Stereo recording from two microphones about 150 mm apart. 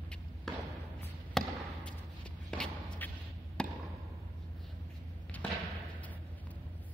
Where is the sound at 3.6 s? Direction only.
5° left (ahead or behind).